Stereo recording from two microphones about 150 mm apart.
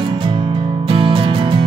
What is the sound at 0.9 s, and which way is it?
Music, 35° right (ahead or behind).